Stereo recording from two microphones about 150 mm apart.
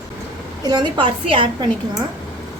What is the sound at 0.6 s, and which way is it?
Speech, 30° right (ahead or behind).